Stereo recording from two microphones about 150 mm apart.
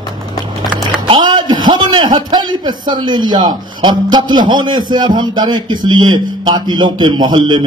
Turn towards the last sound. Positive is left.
turn(degrees=-30)  # may be behind; listen again after turning